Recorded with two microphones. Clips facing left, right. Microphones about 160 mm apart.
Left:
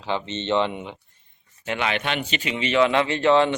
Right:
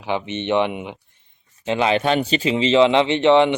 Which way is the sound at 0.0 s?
15° right (ahead or behind).